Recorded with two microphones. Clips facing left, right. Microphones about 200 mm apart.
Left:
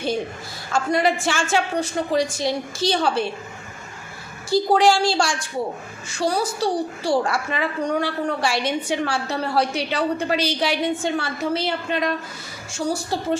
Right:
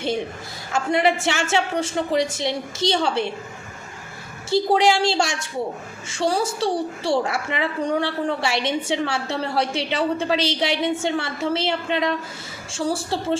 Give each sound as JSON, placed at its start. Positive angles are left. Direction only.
{"t": 0.7, "sound": "a woman's voice", "side_deg": -25}
{"t": 4.4, "sound": "a woman's voice", "side_deg": -25}